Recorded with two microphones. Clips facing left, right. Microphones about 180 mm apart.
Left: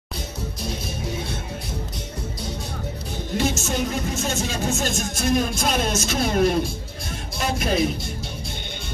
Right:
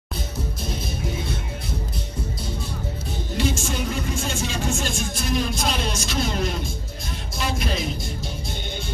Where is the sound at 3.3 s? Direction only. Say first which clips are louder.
Left 2 dB; 45° left (ahead or behind).